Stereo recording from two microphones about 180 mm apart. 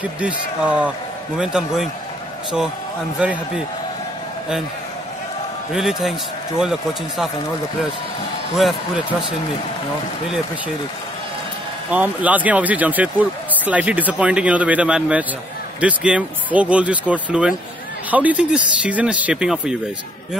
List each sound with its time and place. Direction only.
0.0 s speech: 5° right (ahead or behind)
3.2 s speech: 5° right (ahead or behind)
5.7 s speech: centre (ahead or behind)
8.5 s speech: centre (ahead or behind)
11.9 s speech: 10° right (ahead or behind)